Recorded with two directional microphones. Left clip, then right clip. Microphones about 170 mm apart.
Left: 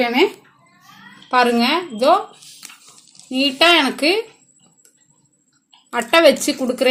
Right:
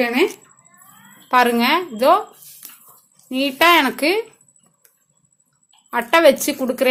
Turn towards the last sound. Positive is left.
turn(degrees=5)  # may be behind; listen again after turning